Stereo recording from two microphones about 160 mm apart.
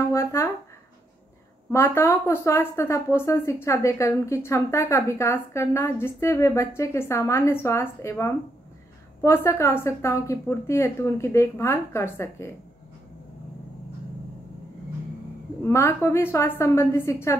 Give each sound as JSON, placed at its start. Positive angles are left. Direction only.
{"t": 0.1, "sound": "speech", "side_deg": 15}
{"t": 1.7, "sound": "speech", "side_deg": 15}
{"t": 15.6, "sound": "speech", "side_deg": 15}